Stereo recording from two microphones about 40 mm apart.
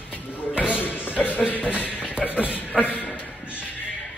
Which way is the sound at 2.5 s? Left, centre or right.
Left.